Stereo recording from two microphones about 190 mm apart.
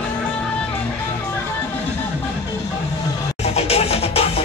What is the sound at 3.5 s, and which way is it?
Music, 30° left (ahead or behind).